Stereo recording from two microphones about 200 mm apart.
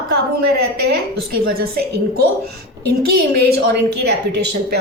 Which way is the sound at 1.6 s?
50° right (ahead or behind).